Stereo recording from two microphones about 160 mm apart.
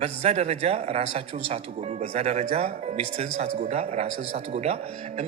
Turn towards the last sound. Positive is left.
turn(degrees=-40)  # may be behind; listen again after turning